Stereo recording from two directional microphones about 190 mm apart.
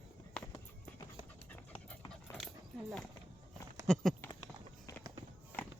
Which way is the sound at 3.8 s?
Centre (ahead or behind).